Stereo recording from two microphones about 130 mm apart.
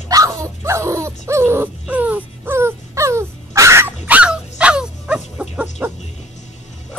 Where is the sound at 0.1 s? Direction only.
25° right (ahead or behind); by 5.9 s 10° right (ahead or behind).